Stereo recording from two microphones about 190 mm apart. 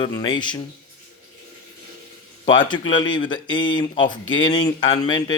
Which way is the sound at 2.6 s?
25° left (ahead or behind).